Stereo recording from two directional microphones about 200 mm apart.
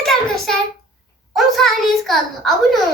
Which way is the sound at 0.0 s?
Centre (ahead or behind).